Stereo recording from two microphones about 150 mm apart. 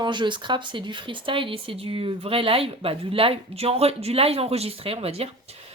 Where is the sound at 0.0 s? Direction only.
30° right (ahead or behind).